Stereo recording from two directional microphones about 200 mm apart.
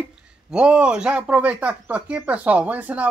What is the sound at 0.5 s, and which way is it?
Speech, 5° right (ahead or behind).